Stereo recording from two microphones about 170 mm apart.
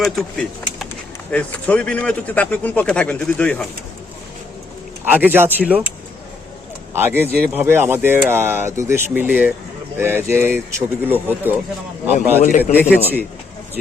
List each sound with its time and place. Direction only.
0.0 s speech: centre (ahead or behind)
5.0 s speech: 10° right (ahead or behind)
6.9 s speech: 10° right (ahead or behind)
12.4 s a man's voice: 50° left (ahead or behind)